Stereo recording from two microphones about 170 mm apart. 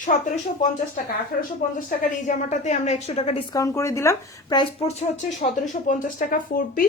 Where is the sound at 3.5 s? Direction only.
20° left (ahead or behind).